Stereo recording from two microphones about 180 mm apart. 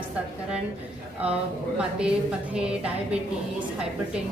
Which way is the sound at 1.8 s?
5° right (ahead or behind).